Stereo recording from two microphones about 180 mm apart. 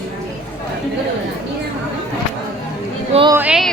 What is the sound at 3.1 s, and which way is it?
Speech, 30° right (ahead or behind).